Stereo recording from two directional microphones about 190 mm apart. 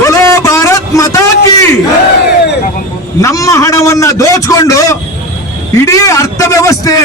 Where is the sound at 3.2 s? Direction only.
15° left (ahead or behind).